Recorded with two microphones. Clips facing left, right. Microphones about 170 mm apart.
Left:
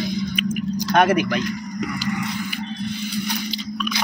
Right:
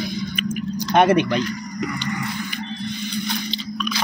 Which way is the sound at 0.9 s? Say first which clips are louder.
Right 2 dB; 25° right (ahead or behind).